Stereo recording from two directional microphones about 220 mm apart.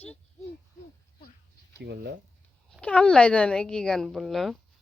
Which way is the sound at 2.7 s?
5° left (ahead or behind).